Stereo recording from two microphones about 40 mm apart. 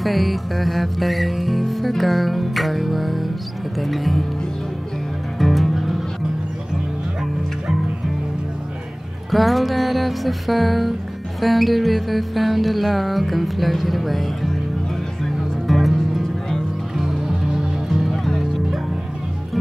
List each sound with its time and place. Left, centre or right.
0.0 s music: centre
5.4 s music: centre
9.3 s music: centre
15.6 s music: centre
16.9 s music: centre
17.8 s music: centre